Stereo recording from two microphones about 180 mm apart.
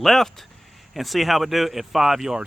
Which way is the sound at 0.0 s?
Centre (ahead or behind).